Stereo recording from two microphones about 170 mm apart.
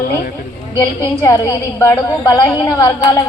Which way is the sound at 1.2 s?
20° left (ahead or behind).